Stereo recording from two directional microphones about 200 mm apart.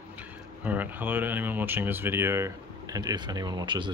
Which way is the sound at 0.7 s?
10° right (ahead or behind).